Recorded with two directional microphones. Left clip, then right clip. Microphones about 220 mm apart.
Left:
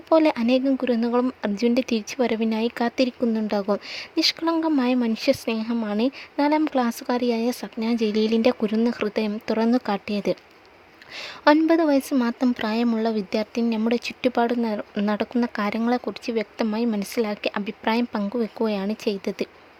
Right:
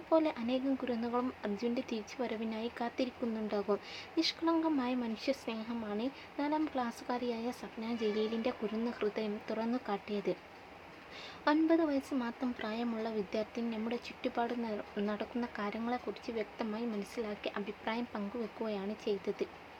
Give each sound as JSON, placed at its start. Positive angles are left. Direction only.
{"t": 0.1, "sound": "speech", "side_deg": 50}